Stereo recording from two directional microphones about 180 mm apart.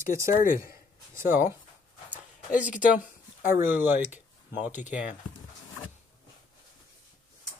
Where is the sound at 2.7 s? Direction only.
45° left (ahead or behind).